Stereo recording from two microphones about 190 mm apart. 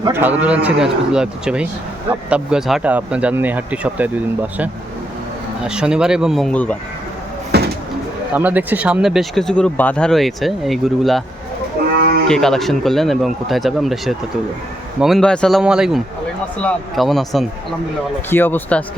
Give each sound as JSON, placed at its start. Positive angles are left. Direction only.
{"t": 0.0, "sound": "speech", "side_deg": -10}
{"t": 5.6, "sound": "speech", "side_deg": -5}
{"t": 7.5, "sound": "bird", "side_deg": -55}
{"t": 8.3, "sound": "speech", "side_deg": -10}
{"t": 12.3, "sound": "speech", "side_deg": 0}
{"t": 18.3, "sound": "speech", "side_deg": 10}